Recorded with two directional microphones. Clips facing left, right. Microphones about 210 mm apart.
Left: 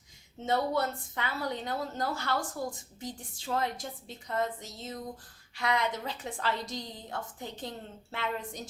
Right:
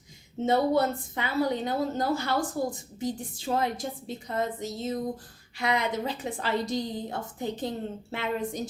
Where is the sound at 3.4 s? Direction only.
15° right (ahead or behind).